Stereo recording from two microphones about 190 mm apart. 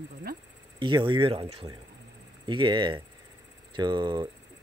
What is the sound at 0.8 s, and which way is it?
Speech, 25° right (ahead or behind).